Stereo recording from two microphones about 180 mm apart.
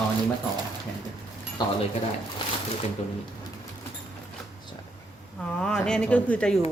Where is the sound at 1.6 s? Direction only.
25° left (ahead or behind).